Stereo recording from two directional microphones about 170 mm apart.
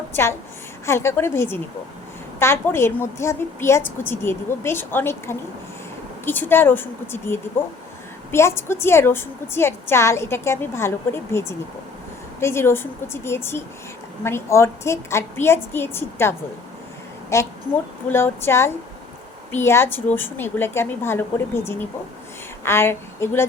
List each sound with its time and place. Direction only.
0.9 s a woman's voice: 15° left (ahead or behind)
17.3 s a woman's voice: 15° left (ahead or behind)